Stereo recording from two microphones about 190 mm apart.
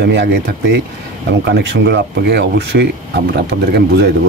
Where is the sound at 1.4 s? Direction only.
65° right (ahead or behind).